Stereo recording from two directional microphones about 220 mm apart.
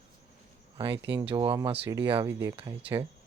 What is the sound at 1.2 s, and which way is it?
Speech, 20° right (ahead or behind).